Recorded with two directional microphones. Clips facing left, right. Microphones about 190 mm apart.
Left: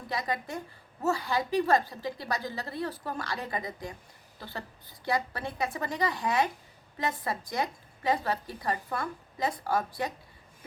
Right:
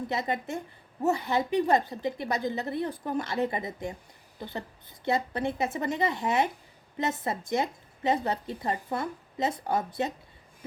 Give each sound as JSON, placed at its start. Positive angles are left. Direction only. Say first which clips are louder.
{"t": 0.1, "sound": "a woman's voice", "louder": "left 1 dB", "side_deg": -25}